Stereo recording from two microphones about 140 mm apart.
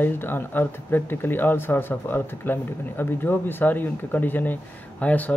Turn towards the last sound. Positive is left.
turn(degrees=10)  # may be behind; listen again after turning